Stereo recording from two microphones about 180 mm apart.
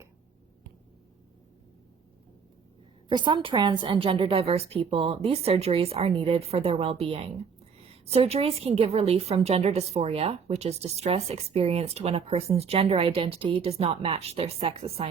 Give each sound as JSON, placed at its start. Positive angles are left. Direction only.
{"t": 3.1, "sound": "a woman's voice", "side_deg": -25}